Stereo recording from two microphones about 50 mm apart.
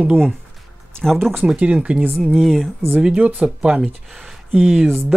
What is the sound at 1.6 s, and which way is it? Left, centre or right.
Speech, right.